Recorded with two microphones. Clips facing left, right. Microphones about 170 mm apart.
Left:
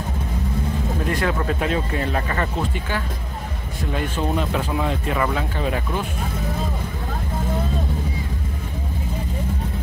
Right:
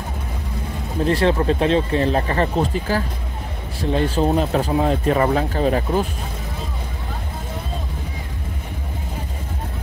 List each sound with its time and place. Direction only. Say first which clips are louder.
1.0 s speech: right 7 dB; 30° right (ahead or behind)